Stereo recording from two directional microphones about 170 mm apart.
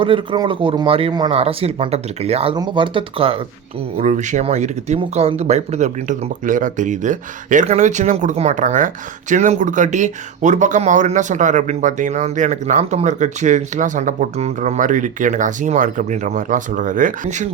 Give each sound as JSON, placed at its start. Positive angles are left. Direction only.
{"t": 0.0, "sound": "speech", "side_deg": -30}
{"t": 3.9, "sound": "speech", "side_deg": -45}